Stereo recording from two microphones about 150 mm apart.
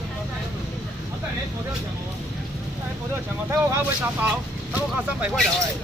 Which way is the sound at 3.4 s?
15° right (ahead or behind).